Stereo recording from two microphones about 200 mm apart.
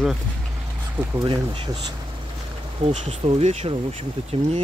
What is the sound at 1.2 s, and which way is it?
Speech, 25° right (ahead or behind).